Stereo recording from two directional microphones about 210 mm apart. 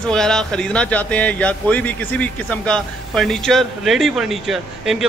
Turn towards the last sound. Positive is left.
turn(degrees=0)  # may be behind; listen again after turning